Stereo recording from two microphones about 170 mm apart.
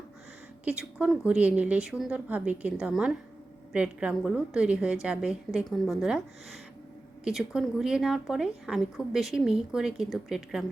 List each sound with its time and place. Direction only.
0.6 s speech: 5° right (ahead or behind)